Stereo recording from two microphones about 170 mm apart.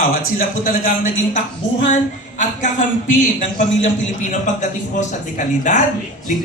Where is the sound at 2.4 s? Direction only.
50° left (ahead or behind).